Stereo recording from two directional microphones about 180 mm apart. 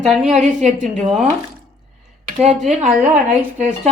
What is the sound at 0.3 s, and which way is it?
Speech, 40° right (ahead or behind).